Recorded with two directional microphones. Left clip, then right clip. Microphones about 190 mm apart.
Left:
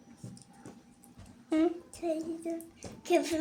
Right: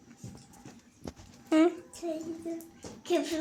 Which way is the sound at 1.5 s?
20° right (ahead or behind).